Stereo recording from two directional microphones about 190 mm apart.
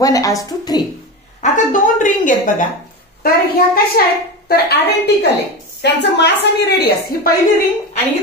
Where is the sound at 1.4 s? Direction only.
40° left (ahead or behind).